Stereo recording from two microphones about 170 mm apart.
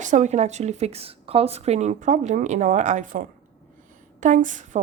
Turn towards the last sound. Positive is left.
turn(degrees=-45)  # may be behind; listen again after turning